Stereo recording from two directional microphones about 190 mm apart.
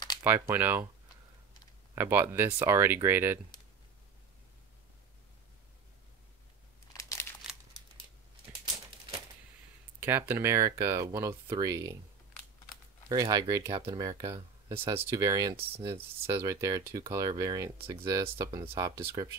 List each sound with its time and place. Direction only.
0.2 s speech: 10° right (ahead or behind)
2.0 s speech: 10° right (ahead or behind)
6.9 s crumpling: 15° left (ahead or behind)
9.9 s speech: 10° right (ahead or behind)
13.1 s speech: 20° right (ahead or behind)